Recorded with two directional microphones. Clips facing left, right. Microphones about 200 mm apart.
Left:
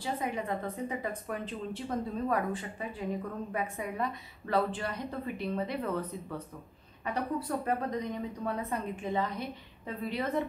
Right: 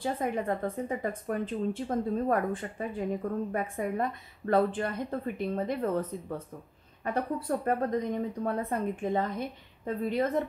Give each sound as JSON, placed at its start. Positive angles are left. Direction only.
{"t": 0.0, "sound": "a woman's voice", "side_deg": -50}